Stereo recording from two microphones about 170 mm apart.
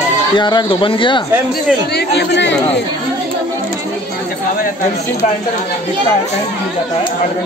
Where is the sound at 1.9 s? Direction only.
85° left.